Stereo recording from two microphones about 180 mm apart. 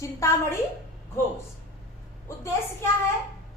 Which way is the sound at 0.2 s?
15° left (ahead or behind).